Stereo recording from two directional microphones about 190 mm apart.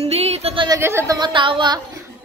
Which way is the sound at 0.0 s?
35° right (ahead or behind).